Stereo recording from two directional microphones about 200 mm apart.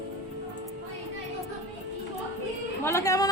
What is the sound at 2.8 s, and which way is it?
Speech, 15° left (ahead or behind).